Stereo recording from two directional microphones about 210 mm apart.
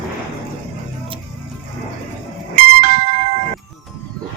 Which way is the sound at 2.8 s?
40° right (ahead or behind).